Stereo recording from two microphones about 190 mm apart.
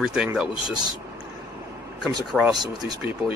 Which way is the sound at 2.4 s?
Centre (ahead or behind).